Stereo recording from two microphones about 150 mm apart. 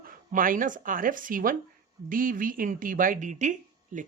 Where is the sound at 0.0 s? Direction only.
65° right (ahead or behind).